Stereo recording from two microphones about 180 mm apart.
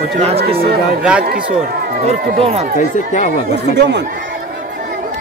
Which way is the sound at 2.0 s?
35° right (ahead or behind).